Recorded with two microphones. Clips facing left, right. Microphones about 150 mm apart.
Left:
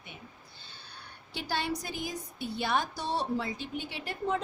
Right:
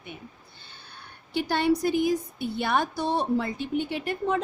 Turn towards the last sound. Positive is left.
turn(degrees=-60)  # may be behind; listen again after turning